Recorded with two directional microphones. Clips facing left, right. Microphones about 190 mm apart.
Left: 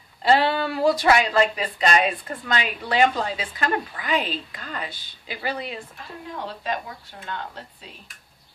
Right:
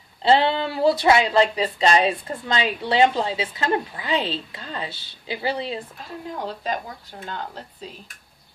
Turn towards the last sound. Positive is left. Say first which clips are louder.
# right 1 dB
turn(degrees=-40)  # may be behind; listen again after turning